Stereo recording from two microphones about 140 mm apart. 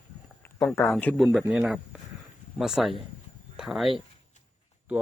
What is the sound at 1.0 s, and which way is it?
A man's voice, centre (ahead or behind).